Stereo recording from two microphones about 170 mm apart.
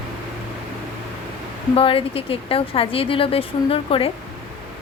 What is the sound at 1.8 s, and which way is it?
A woman's voice, 35° left (ahead or behind).